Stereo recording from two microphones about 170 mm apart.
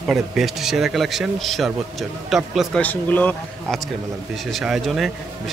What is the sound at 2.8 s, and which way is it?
Speech, 10° left (ahead or behind).